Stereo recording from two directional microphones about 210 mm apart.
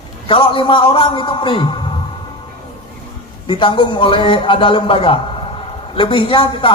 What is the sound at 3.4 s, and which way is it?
A man's voice, 25° left (ahead or behind).